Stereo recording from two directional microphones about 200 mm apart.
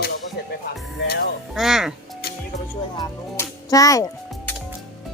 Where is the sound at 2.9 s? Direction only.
20° left (ahead or behind).